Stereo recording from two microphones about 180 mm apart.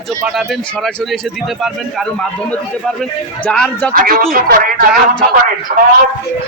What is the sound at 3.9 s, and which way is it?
Speech, 50° right (ahead or behind).